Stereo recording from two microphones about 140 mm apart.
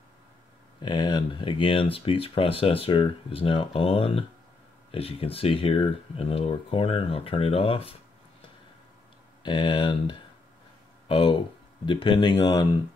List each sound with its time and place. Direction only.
0.8 s speech: 30° left (ahead or behind)
9.4 s speech: 35° left (ahead or behind)